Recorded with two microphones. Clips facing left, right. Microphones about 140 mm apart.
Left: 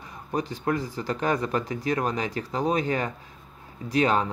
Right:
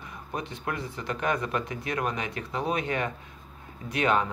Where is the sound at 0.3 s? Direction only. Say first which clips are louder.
Left 7 dB; 35° left (ahead or behind).